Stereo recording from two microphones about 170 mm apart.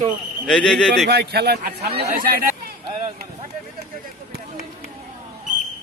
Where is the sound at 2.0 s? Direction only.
55° right (ahead or behind).